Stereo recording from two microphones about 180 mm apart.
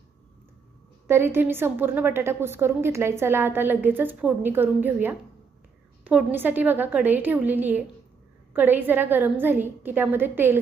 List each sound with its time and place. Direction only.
1.0 s a woman's voice: 15° right (ahead or behind)